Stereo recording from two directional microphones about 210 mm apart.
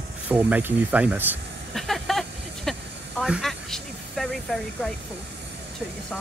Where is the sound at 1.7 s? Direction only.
Centre (ahead or behind).